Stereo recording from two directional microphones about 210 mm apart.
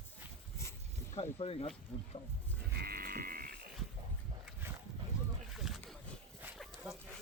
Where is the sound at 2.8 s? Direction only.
45° right (ahead or behind).